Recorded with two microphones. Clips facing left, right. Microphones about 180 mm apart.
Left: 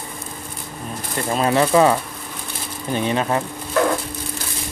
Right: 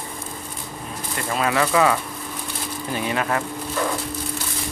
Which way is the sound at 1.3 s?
25° left (ahead or behind).